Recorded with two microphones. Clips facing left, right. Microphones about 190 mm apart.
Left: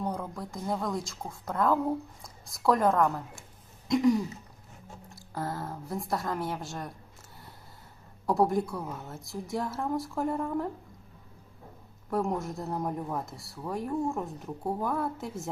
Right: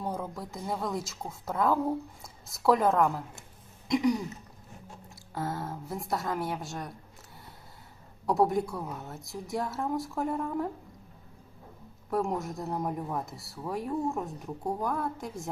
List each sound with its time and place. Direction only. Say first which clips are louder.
0.0 s speech: left 1 dB; 5° right (ahead or behind)
5.3 s speech: right 1 dB; centre (ahead or behind)
8.3 s speech: even; centre (ahead or behind)
12.1 s speech: even; centre (ahead or behind)